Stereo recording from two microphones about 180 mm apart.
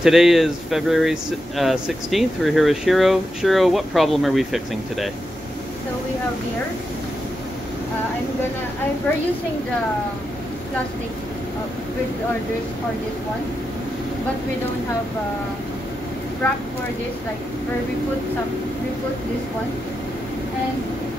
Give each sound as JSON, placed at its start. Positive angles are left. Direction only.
{"t": 0.0, "sound": "speech", "side_deg": 0}